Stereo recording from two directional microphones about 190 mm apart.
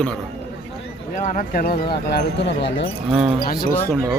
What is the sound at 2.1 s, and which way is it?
Speech, 60° left (ahead or behind).